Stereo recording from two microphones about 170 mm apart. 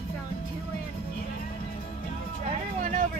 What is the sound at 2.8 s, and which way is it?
Vehicle, 50° right (ahead or behind).